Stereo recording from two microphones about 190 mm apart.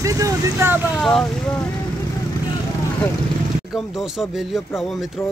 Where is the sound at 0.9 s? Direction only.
Centre (ahead or behind).